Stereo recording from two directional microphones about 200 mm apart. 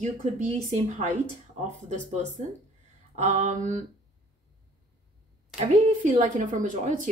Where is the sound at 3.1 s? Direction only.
35° right (ahead or behind).